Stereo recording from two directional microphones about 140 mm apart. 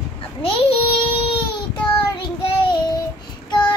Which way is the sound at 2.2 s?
35° left (ahead or behind).